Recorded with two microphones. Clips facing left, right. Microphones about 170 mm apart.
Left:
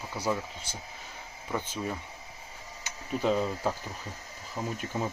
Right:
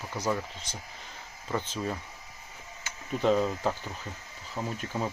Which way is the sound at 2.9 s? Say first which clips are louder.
Even; 20° left (ahead or behind).